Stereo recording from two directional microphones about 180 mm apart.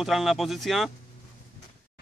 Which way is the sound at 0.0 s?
Centre (ahead or behind).